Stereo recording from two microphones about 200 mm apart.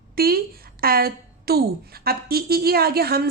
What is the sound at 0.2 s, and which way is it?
A woman's voice, 50° right (ahead or behind).